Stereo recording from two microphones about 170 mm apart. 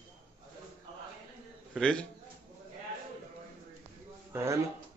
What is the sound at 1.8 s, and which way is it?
Speech, 5° left (ahead or behind).